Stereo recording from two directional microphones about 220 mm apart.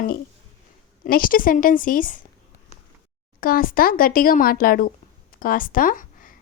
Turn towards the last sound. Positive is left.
turn(degrees=40)  # may be behind; listen again after turning